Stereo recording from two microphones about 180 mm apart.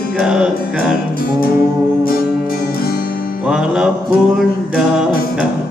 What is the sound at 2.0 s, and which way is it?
Music, 55° left (ahead or behind).